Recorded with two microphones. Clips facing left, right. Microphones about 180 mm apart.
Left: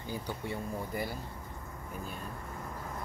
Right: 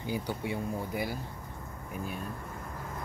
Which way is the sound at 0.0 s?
10° right (ahead or behind).